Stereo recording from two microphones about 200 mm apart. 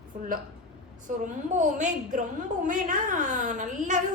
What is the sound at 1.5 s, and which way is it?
A woman's voice, 40° right (ahead or behind).